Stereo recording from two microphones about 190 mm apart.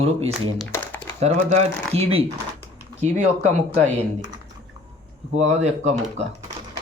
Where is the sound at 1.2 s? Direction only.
35° right (ahead or behind).